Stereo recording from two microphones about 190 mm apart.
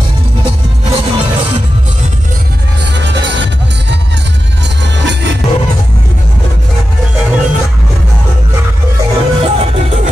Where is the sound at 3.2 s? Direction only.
65° right (ahead or behind).